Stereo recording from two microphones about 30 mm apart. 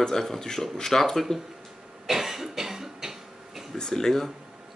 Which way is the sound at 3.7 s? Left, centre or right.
Centre.